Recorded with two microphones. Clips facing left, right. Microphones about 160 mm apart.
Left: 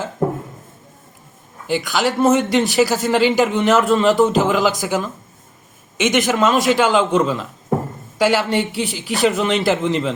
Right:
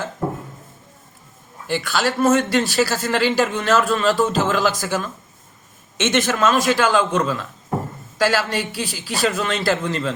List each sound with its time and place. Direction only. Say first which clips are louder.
1.6 s speech: left 2 dB; 15° left (ahead or behind)